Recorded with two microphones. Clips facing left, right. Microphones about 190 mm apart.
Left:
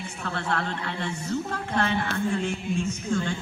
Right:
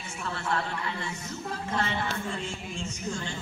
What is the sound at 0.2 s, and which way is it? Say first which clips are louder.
A woman's voice: left 2 dB; 60° left (ahead or behind).